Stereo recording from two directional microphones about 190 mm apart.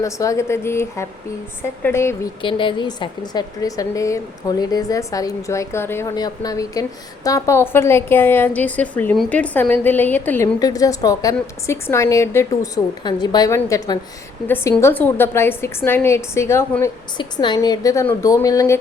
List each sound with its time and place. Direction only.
0.0 s a woman's voice: 15° left (ahead or behind)
2.4 s a woman's voice: 25° left (ahead or behind)